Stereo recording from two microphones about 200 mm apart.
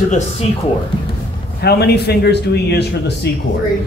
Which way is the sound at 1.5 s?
55° left (ahead or behind).